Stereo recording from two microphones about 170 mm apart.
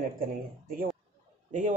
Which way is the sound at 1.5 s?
45° right (ahead or behind).